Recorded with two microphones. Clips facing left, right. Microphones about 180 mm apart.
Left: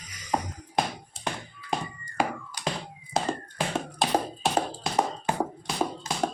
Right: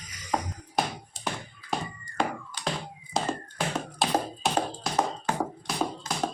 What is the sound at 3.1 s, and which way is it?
Tap, centre (ahead or behind).